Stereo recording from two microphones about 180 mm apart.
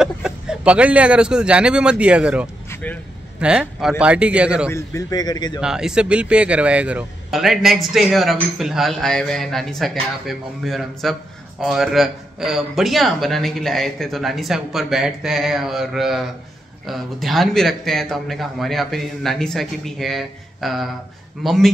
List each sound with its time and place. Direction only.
0.0 s speech: 5° right (ahead or behind)
2.7 s vehicle: 10° left (ahead or behind)
3.3 s a man's voice: 5° right (ahead or behind)
4.6 s speech: 15° left (ahead or behind)
5.6 s speech: 5° right (ahead or behind)